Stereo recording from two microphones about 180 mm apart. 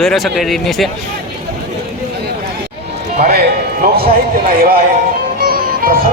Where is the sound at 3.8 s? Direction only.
55° right (ahead or behind).